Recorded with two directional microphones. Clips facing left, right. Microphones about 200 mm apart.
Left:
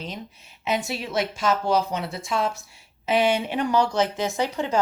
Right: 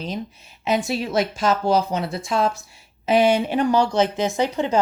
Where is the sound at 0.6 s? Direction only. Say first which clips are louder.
Right 5 dB; 35° right (ahead or behind).